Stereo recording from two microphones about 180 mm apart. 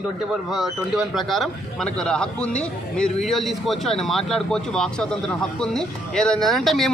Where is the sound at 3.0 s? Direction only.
Centre (ahead or behind).